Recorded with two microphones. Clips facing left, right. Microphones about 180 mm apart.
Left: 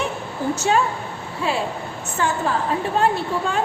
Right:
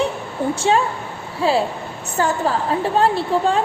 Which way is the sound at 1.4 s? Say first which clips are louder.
Right 5 dB; 30° right (ahead or behind).